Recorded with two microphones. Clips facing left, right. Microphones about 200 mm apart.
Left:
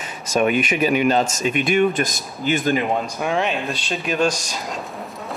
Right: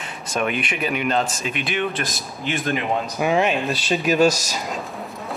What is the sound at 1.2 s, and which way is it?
Speech, 45° left (ahead or behind).